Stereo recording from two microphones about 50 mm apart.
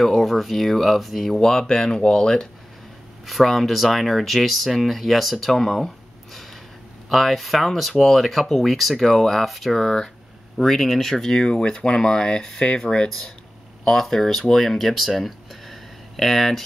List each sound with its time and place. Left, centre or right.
0.0 s speech: centre
3.3 s speech: centre
7.1 s speech: centre